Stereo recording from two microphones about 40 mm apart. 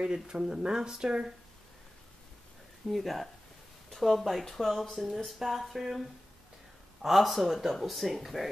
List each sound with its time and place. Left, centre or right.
0.0 s speech: centre
2.9 s speech: centre